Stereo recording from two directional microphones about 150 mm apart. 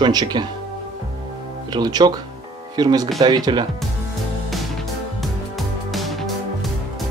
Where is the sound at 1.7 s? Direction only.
25° right (ahead or behind).